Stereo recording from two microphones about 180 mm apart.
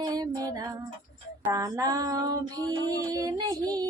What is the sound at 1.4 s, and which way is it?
Female singing, 20° right (ahead or behind).